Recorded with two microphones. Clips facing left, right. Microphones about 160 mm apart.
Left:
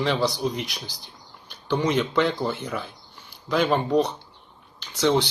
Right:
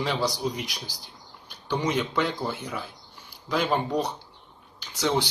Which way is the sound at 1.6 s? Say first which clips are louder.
Left 3 dB; 10° right (ahead or behind).